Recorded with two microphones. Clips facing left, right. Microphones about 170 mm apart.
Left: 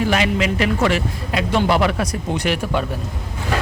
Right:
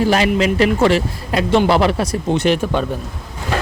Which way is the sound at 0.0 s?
35° right (ahead or behind).